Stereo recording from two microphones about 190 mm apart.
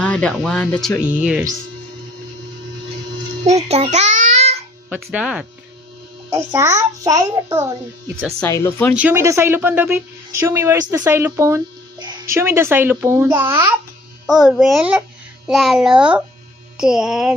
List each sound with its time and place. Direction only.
0.0 s speech: 5° left (ahead or behind)
3.4 s child singing: 35° right (ahead or behind)
4.9 s a woman's voice: 5° right (ahead or behind)
8.4 s speech: 15° left (ahead or behind)
9.0 s a woman's voice: 10° right (ahead or behind)
14.3 s speech: centre (ahead or behind)